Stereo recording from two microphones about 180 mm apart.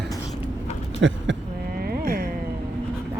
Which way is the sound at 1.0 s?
90° right.